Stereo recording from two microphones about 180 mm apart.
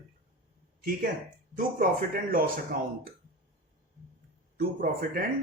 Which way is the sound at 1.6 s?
50° right (ahead or behind).